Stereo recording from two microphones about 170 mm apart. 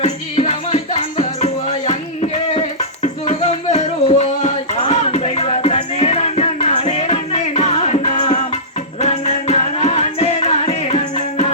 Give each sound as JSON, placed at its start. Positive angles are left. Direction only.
{"t": 0.0, "sound": "music", "side_deg": 40}
{"t": 2.6, "sound": "music", "side_deg": 40}